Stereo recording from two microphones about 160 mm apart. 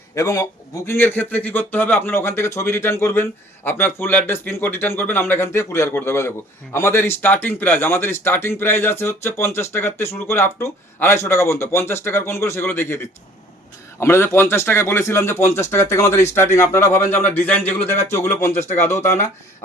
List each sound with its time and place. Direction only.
0.1 s speech: 20° left (ahead or behind)
18.5 s speech: 45° left (ahead or behind)
18.8 s speech: 15° left (ahead or behind)